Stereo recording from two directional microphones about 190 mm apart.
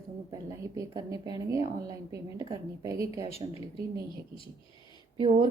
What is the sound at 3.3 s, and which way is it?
A woman's voice, 30° left (ahead or behind).